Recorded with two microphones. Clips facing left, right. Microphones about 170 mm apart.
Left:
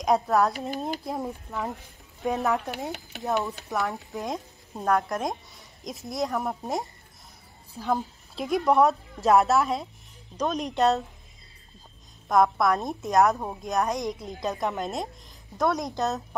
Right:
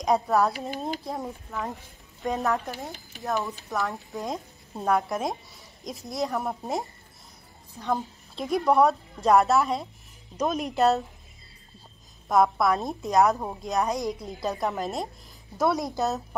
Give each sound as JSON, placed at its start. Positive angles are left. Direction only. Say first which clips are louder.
{"t": 0.0, "sound": "a woman's voice", "louder": "even", "side_deg": 0}
{"t": 2.7, "sound": "speech", "louder": "left 4 dB", "side_deg": 75}
{"t": 3.7, "sound": "a woman's voice", "louder": "left 1 dB", "side_deg": 0}
{"t": 12.3, "sound": "a woman's voice", "louder": "even", "side_deg": 0}